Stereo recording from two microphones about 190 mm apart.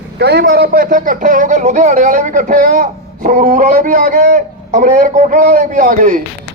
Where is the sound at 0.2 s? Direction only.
60° right (ahead or behind).